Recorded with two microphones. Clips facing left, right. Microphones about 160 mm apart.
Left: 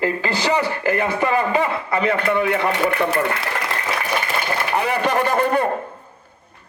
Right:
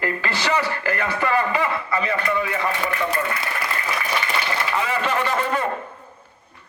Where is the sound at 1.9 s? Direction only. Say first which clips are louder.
Left 4 dB; 60° left (ahead or behind).